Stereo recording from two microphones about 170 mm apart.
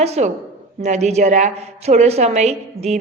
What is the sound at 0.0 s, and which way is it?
A woman's voice, 40° right (ahead or behind).